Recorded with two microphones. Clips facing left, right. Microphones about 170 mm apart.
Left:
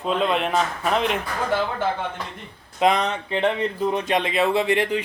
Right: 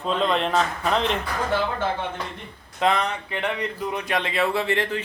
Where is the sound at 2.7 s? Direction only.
20° left (ahead or behind).